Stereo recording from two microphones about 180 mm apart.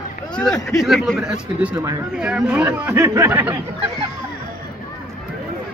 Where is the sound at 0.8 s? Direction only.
Centre (ahead or behind).